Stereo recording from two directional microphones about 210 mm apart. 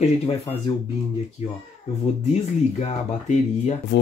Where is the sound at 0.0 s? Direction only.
30° left (ahead or behind).